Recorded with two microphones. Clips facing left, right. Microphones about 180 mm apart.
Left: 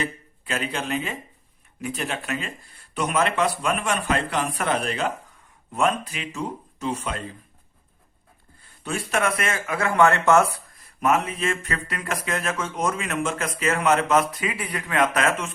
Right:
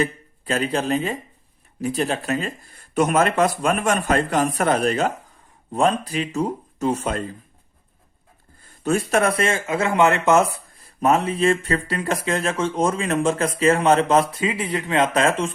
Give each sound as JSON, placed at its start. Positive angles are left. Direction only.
{"t": 0.0, "sound": "a man's voice", "side_deg": -35}
{"t": 8.8, "sound": "speech", "side_deg": -45}